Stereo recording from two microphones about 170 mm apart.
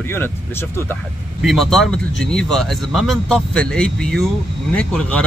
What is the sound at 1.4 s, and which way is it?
Speech, centre (ahead or behind).